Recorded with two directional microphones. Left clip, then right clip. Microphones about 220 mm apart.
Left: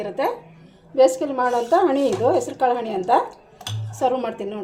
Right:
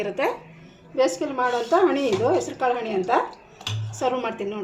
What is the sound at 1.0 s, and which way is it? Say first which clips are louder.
A woman's voice: left 5 dB; 30° left (ahead or behind).